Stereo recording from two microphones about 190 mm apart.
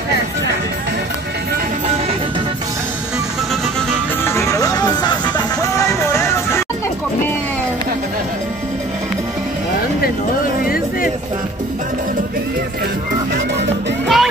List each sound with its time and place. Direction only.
4.2 s music: 15° left (ahead or behind)
14.0 s music: centre (ahead or behind)